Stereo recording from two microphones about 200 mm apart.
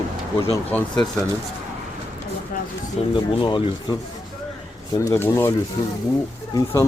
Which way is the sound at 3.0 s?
30° left (ahead or behind).